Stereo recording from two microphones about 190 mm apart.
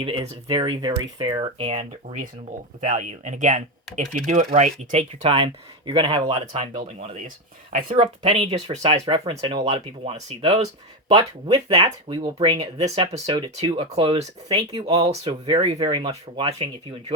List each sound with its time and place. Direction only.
0.0 s speech: 30° right (ahead or behind)
11.2 s speech: 20° right (ahead or behind)